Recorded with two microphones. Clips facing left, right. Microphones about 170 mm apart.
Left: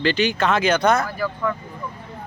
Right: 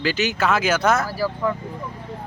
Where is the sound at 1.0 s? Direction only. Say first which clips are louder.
Right 1 dB; 35° right (ahead or behind).